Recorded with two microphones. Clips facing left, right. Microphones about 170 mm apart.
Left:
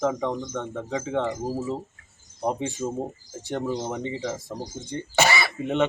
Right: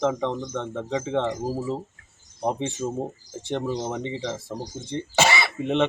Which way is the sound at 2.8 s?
10° right (ahead or behind).